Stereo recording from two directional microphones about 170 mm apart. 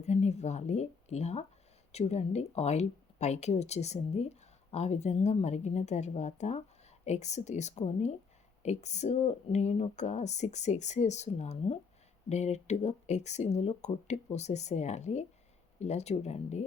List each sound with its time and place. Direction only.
0.0 s speech: 40° left (ahead or behind)